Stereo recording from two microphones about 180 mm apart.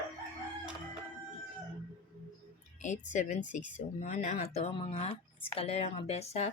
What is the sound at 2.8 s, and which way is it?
A woman's voice, 40° left (ahead or behind).